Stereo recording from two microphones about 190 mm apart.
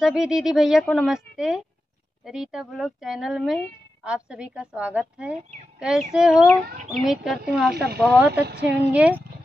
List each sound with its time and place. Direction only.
0.0 s speech: centre (ahead or behind)
7.7 s speech: 55° right (ahead or behind)
8.0 s a woman's voice: 5° right (ahead or behind)